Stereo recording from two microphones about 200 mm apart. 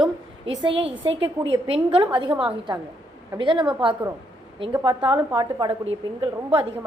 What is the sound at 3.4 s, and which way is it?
Speech, 25° right (ahead or behind).